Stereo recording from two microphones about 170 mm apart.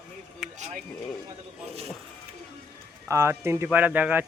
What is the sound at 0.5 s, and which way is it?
Speech, 45° right (ahead or behind).